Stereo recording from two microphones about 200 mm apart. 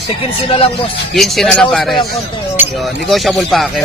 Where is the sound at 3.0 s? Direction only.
Centre (ahead or behind).